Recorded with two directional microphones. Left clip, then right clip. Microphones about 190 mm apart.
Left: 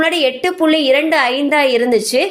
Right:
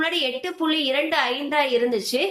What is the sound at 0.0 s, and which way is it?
A woman's voice, 40° left (ahead or behind).